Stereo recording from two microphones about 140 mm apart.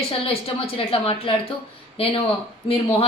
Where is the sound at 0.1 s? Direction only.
40° left (ahead or behind).